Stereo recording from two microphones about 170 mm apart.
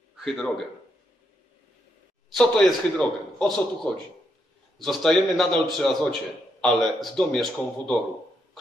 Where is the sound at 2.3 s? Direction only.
5° left (ahead or behind).